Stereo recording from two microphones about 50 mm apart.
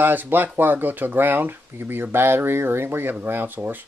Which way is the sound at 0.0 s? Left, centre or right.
Right.